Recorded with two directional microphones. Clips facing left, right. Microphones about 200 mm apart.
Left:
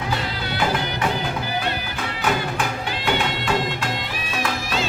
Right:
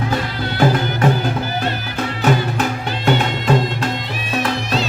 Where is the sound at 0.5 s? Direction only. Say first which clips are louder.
Right 7 dB; 45° right (ahead or behind).